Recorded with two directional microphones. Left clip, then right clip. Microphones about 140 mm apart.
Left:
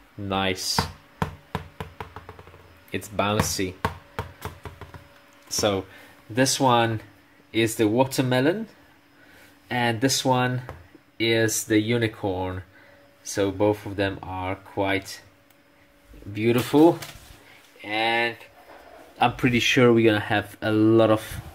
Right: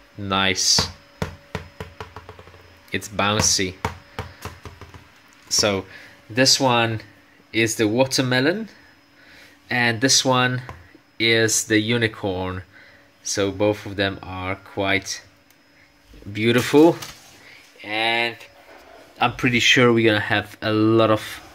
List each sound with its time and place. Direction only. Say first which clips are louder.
0.3 s speech: right 7 dB; centre (ahead or behind)
1.5 s music: right 1 dB; 15° left (ahead or behind)
2.9 s chopping: right 3 dB; 5° right (ahead or behind)
5.5 s speech: right 4 dB; centre (ahead or behind)
9.7 s speech: right 5 dB; 5° right (ahead or behind)
16.3 s speech: right 4 dB; 10° right (ahead or behind)
19.1 s speech: right 2 dB; 10° left (ahead or behind)